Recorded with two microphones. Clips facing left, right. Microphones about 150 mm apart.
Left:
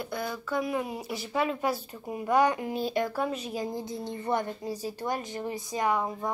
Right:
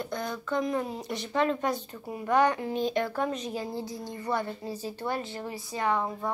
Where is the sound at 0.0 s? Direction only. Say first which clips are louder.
Even; 5° left (ahead or behind).